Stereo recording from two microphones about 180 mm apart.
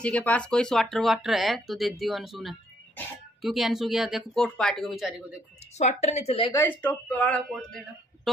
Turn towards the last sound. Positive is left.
turn(degrees=5)  # may be behind; listen again after turning